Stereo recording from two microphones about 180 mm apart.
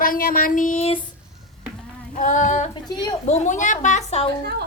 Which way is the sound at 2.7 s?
25° left (ahead or behind).